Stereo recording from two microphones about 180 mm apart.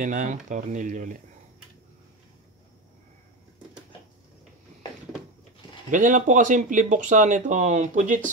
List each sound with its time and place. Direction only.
0.0 s speech: 45° right (ahead or behind)
5.9 s speech: 45° right (ahead or behind)